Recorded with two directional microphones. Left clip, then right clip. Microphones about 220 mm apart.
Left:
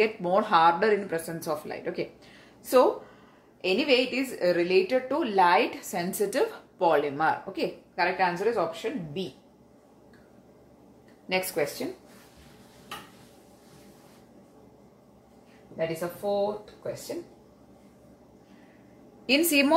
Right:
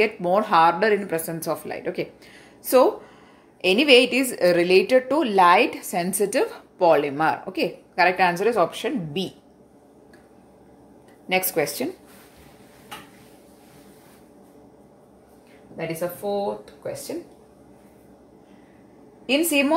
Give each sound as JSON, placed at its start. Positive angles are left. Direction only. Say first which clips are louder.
{"t": 0.0, "sound": "speech", "louder": "right 4 dB", "side_deg": -20}
{"t": 3.6, "sound": "a woman's voice", "louder": "right 8 dB", "side_deg": -35}
{"t": 11.2, "sound": "a woman's voice", "louder": "right 5 dB", "side_deg": -30}
{"t": 16.2, "sound": "speech", "louder": "right 1 dB", "side_deg": -45}
{"t": 19.2, "sound": "a woman's voice", "louder": "right 2 dB", "side_deg": 0}